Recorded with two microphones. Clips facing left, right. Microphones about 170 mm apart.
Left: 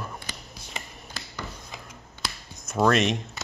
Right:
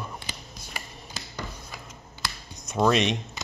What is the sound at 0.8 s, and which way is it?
Finger snapping, 20° left (ahead or behind).